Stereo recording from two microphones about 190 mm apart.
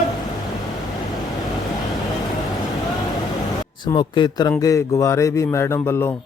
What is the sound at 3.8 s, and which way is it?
A man's voice, 25° left (ahead or behind).